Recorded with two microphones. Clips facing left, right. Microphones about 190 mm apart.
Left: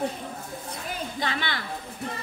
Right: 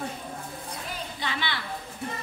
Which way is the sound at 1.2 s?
45° left (ahead or behind).